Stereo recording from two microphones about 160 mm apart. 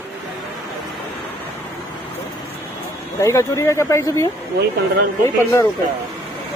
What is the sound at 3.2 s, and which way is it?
Speech, 20° left (ahead or behind).